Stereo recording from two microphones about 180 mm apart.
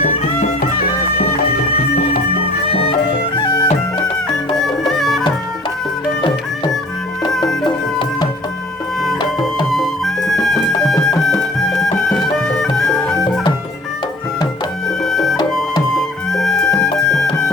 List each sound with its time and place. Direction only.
3.3 s music: 25° left (ahead or behind)
4.9 s music: centre (ahead or behind)
7.6 s music: 25° left (ahead or behind)
9.6 s music: centre (ahead or behind)
15.0 s music: centre (ahead or behind)